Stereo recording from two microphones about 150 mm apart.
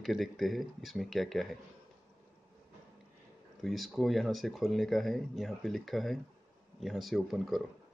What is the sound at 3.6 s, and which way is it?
Speech, centre (ahead or behind).